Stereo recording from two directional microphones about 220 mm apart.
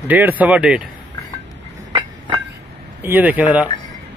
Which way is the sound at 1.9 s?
20° right (ahead or behind).